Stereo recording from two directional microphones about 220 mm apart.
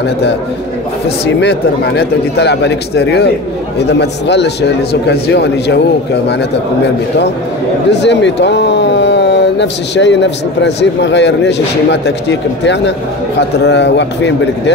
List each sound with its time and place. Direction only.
1.4 s speech: 50° left (ahead or behind)
7.9 s speech: 50° left (ahead or behind)